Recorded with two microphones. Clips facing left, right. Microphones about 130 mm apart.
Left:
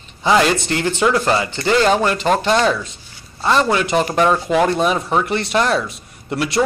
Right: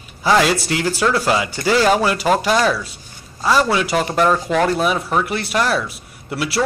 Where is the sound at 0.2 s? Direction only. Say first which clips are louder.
Even; 5° right (ahead or behind).